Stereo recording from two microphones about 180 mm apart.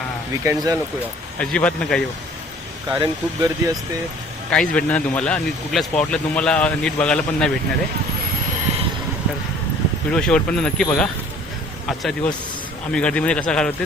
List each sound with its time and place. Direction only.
0.4 s speech: 20° right (ahead or behind)
1.4 s speech: 5° left (ahead or behind)
3.0 s speech: 20° right (ahead or behind)
4.5 s speech: 5° left (ahead or behind)
10.1 s speech: 5° left (ahead or behind)